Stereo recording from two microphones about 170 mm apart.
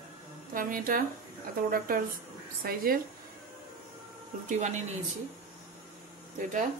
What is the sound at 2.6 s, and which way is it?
Speech, 60° right (ahead or behind).